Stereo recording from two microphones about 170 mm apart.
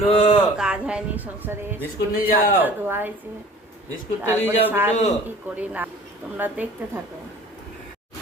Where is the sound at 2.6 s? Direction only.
10° right (ahead or behind).